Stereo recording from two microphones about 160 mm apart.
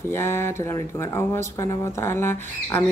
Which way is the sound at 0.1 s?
15° left (ahead or behind).